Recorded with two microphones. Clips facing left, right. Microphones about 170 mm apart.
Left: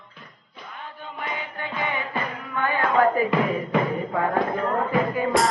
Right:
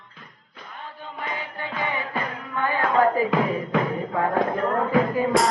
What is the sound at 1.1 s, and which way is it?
Chant, centre (ahead or behind).